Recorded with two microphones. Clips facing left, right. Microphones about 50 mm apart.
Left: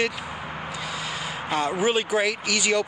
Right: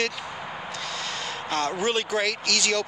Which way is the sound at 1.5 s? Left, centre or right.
Centre.